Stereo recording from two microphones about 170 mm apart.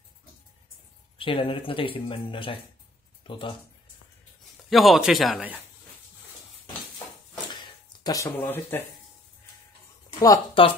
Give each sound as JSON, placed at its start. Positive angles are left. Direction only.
{"t": 1.1, "sound": "speech", "side_deg": 30}
{"t": 4.6, "sound": "speech", "side_deg": 0}
{"t": 7.4, "sound": "a sound", "side_deg": 25}
{"t": 8.4, "sound": "speech", "side_deg": 10}
{"t": 10.2, "sound": "speech", "side_deg": 20}